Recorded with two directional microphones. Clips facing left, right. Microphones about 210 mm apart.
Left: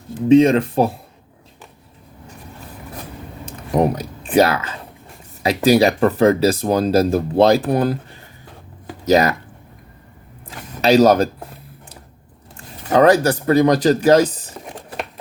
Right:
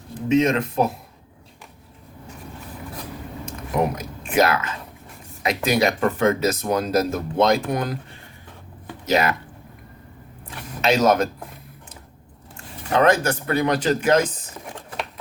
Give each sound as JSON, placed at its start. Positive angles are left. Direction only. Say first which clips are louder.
{"t": 0.3, "sound": "speech", "louder": "left 7 dB", "side_deg": 30}
{"t": 3.4, "sound": "a sound", "louder": "left 5 dB", "side_deg": 30}
{"t": 5.6, "sound": "speech", "louder": "left 7 dB", "side_deg": 35}
{"t": 9.0, "sound": "speech", "louder": "left 6 dB", "side_deg": 40}
{"t": 10.8, "sound": "speech", "louder": "left 6 dB", "side_deg": 35}
{"t": 12.9, "sound": "speech", "louder": "left 5 dB", "side_deg": 35}